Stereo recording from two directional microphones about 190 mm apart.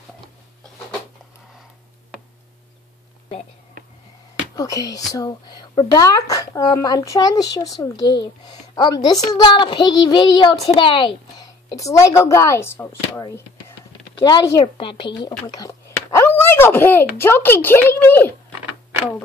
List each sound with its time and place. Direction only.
4.6 s a woman's voice: 20° left (ahead or behind)